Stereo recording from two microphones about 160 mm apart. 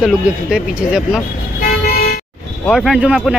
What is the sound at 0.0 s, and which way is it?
Speech, 5° right (ahead or behind).